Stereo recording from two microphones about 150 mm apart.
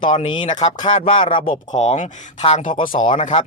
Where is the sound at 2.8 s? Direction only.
65° left (ahead or behind).